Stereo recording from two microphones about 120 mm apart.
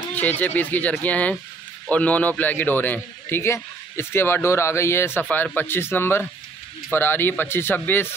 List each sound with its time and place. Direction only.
0.1 s a man's voice: 15° left (ahead or behind)